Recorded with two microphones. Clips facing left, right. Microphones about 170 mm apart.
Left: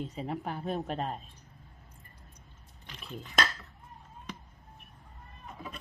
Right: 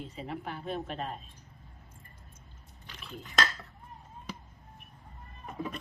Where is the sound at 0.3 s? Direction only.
40° left (ahead or behind).